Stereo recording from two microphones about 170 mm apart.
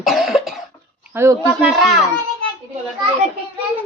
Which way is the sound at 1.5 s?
5° right (ahead or behind).